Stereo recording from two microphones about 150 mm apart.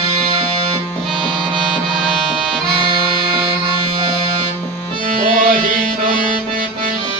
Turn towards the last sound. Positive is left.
turn(degrees=-65)  # may be behind; listen again after turning